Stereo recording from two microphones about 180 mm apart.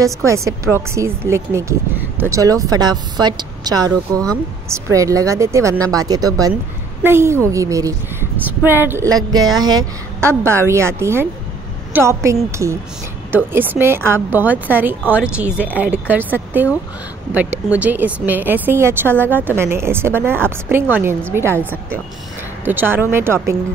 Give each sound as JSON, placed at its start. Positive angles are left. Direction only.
{"t": 0.0, "sound": "a woman's voice", "side_deg": -15}
{"t": 17.6, "sound": "a woman's voice", "side_deg": -10}